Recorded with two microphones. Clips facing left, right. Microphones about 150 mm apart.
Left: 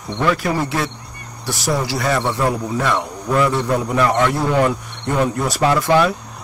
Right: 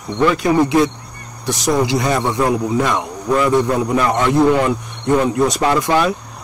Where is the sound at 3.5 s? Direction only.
20° right (ahead or behind).